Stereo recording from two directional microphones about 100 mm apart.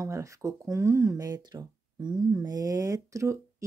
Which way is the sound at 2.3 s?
35° right (ahead or behind).